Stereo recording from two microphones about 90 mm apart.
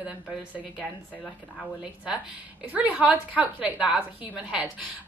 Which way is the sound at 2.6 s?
15° right (ahead or behind).